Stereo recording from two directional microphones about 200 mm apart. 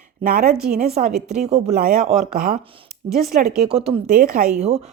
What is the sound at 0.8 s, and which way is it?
Speech, 35° right (ahead or behind).